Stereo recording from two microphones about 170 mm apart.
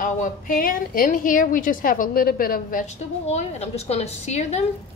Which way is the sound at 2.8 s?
40° left (ahead or behind).